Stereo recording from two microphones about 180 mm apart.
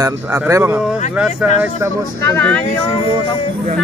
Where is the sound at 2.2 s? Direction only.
10° left (ahead or behind).